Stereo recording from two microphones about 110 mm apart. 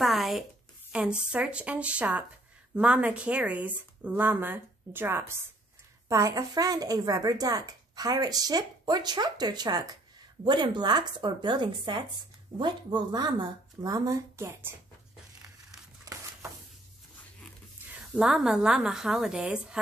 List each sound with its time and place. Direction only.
0.0 s a woman's voice: centre (ahead or behind); by 14.7 s 20° right (ahead or behind)
16.1 s a sound: 35° right (ahead or behind)
18.1 s a woman's voice: 5° right (ahead or behind)